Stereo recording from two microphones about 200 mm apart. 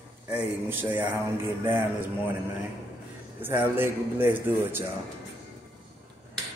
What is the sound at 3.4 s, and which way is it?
A man's voice, 10° right (ahead or behind).